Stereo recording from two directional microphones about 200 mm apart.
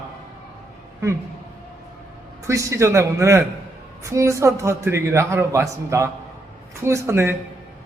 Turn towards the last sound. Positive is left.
turn(degrees=-15)  # may be behind; listen again after turning